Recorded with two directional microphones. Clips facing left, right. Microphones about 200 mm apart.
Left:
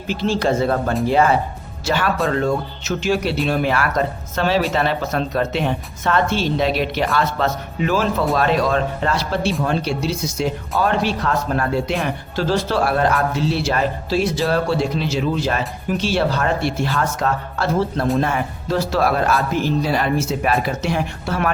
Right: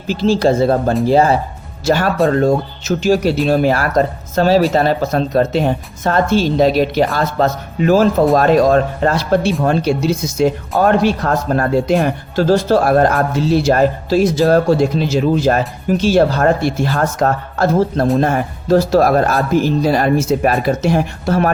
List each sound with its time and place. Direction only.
0.1 s speech: 35° right (ahead or behind)